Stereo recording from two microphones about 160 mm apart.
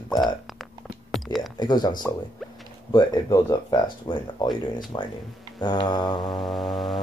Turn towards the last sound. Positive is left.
turn(degrees=0)  # may be behind; listen again after turning